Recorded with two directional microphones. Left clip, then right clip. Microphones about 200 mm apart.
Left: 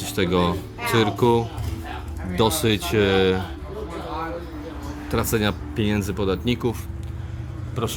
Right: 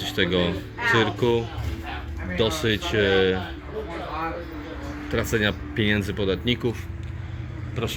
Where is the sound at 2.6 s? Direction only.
25° left (ahead or behind).